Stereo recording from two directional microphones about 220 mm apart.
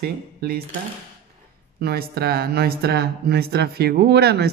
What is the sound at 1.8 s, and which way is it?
Speech, 45° right (ahead or behind).